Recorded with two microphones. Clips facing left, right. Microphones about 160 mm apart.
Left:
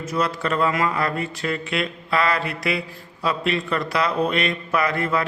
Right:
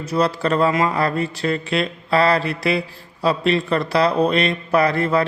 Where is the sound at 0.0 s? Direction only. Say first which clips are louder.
Right 4 dB; 35° right (ahead or behind).